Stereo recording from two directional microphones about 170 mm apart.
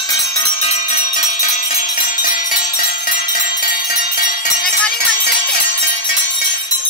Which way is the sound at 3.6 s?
55° left (ahead or behind).